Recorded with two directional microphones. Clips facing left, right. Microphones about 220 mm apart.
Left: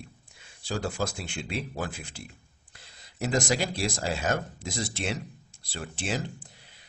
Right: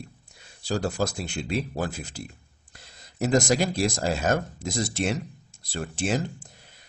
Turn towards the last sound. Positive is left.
turn(degrees=-45)  # may be behind; listen again after turning